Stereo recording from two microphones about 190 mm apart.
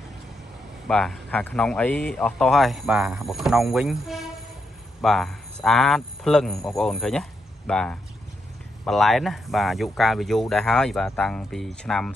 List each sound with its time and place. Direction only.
0.8 s speech: 5° left (ahead or behind)